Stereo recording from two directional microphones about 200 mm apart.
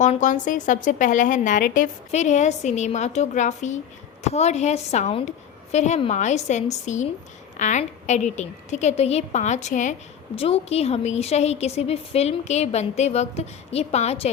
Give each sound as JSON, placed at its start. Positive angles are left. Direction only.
{"t": 0.0, "sound": "a woman's voice", "side_deg": 40}